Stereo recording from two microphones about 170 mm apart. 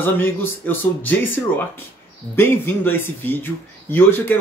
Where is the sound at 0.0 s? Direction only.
10° left (ahead or behind).